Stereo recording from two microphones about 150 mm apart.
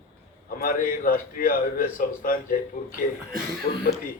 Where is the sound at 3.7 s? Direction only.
65° left (ahead or behind).